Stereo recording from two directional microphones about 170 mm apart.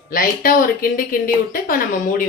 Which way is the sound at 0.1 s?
55° left (ahead or behind).